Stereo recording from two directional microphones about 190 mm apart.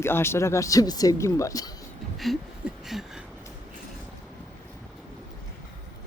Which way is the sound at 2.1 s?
Centre (ahead or behind).